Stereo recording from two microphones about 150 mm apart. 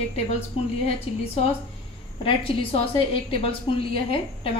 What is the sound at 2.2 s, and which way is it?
A woman's voice, 40° left (ahead or behind).